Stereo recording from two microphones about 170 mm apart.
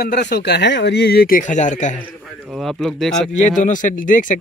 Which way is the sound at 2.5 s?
Centre (ahead or behind).